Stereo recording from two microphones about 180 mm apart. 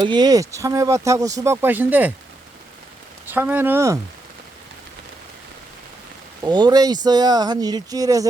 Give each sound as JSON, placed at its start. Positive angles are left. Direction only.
{"t": 0.0, "sound": "speech", "side_deg": -25}
{"t": 3.2, "sound": "speech", "side_deg": -10}
{"t": 6.4, "sound": "speech", "side_deg": -20}